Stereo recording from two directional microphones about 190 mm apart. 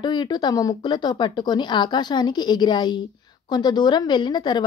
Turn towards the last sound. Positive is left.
turn(degrees=25)  # may be behind; listen again after turning